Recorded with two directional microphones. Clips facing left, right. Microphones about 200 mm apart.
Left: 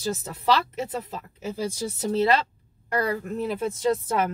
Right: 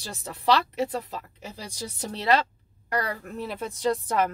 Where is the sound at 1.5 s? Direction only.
50° left (ahead or behind).